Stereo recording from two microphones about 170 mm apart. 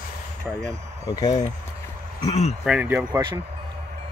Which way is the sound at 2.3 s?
40° left (ahead or behind).